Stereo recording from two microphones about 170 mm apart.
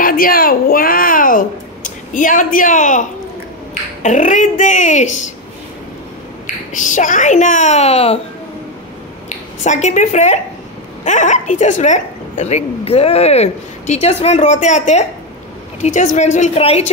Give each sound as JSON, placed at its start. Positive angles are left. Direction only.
{"t": 0.0, "sound": "a sound", "side_deg": 60}
{"t": 2.1, "sound": "a woman's voice", "side_deg": 50}
{"t": 6.4, "sound": "a woman's voice", "side_deg": 50}
{"t": 9.6, "sound": "a woman's voice", "side_deg": 45}